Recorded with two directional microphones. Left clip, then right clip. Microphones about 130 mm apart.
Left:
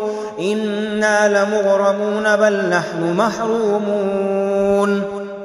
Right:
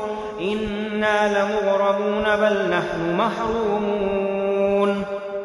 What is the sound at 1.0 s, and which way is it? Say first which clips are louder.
Mantra: left 5 dB; 45° left (ahead or behind).